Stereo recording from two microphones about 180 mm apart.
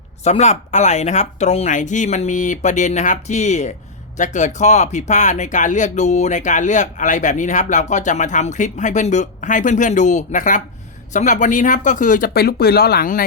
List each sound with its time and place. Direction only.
0.3 s speech: 40° left (ahead or behind); by 13.2 s 55° left (ahead or behind)